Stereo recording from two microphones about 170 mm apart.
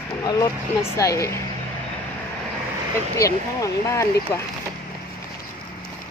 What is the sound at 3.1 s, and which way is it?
Speech, 20° left (ahead or behind).